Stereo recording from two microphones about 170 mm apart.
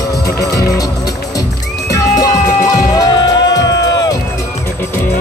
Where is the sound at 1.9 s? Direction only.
20° left (ahead or behind).